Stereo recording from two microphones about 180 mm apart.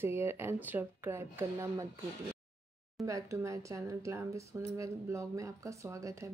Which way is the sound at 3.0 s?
15° right (ahead or behind).